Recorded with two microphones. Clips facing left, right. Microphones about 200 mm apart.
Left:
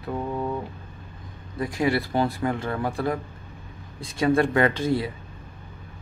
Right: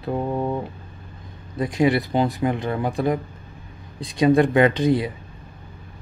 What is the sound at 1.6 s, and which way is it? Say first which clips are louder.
Speech: right 4 dB; 20° right (ahead or behind).